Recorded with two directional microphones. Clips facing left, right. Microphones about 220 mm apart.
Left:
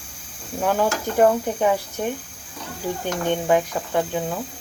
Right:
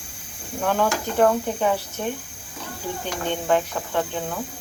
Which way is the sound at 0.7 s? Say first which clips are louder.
Left 1 dB; 10° left (ahead or behind).